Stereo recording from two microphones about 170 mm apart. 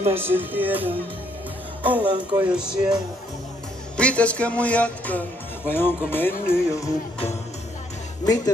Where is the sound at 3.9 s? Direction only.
5° left (ahead or behind).